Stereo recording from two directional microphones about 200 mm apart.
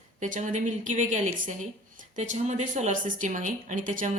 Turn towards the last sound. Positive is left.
turn(degrees=-40)  # may be behind; listen again after turning